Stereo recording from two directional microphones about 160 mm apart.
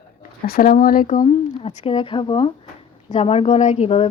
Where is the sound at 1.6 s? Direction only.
35° left (ahead or behind).